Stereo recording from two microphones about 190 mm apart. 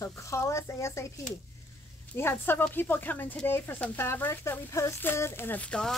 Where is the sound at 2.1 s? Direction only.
10° left (ahead or behind).